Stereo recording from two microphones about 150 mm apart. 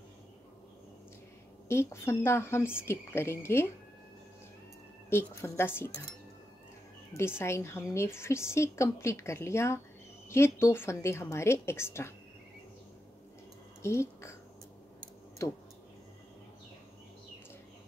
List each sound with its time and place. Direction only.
1.7 s a woman's voice: 15° left (ahead or behind)
5.1 s a woman's voice: 15° left (ahead or behind)
7.2 s a woman's voice: 15° left (ahead or behind)
13.8 s speech: 20° left (ahead or behind)
15.4 s speech: 20° left (ahead or behind)